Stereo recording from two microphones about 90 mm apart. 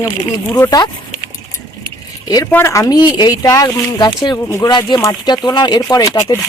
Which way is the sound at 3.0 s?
50° left (ahead or behind).